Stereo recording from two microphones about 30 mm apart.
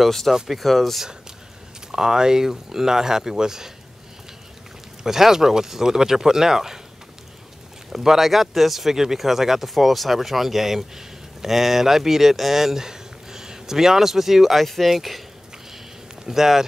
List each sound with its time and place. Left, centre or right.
0.0 s speech: centre
1.9 s speech: centre
5.0 s speech: centre
7.9 s speech: centre
14.6 s speech: centre
16.3 s speech: centre